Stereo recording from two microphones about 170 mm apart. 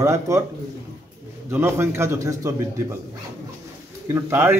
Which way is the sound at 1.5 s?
15° right (ahead or behind).